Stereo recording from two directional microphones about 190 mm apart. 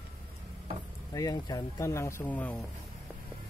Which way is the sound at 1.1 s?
20° left (ahead or behind).